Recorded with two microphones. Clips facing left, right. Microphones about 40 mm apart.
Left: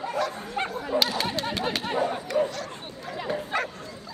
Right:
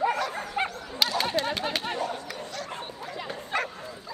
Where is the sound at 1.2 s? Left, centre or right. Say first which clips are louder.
Right 1 dB; centre.